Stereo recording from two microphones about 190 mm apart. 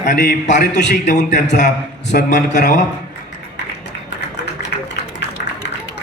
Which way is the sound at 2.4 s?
40° left (ahead or behind).